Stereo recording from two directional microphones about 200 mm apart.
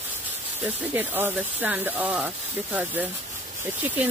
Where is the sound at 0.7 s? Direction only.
10° right (ahead or behind).